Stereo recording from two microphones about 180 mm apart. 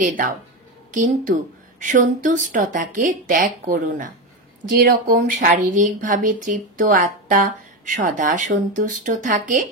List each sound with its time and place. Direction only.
0.0 s speech: 50° right (ahead or behind)